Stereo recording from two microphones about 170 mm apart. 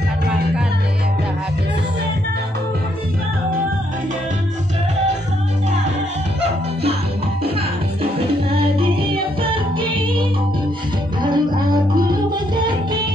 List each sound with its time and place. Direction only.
9.4 s music: 30° right (ahead or behind)
11.2 s music: 25° right (ahead or behind)